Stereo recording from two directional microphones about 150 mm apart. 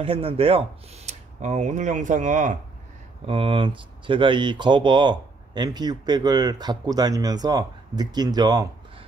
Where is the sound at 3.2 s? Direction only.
35° right (ahead or behind).